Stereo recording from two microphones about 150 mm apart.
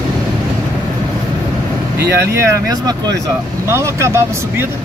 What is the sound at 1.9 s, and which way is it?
Speech, 90° right.